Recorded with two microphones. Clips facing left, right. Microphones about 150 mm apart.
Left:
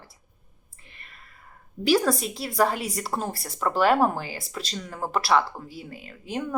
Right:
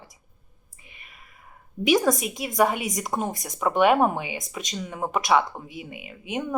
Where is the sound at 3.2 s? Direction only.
15° right (ahead or behind).